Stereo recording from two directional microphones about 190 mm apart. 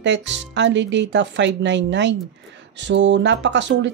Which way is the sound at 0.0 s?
70° right (ahead or behind).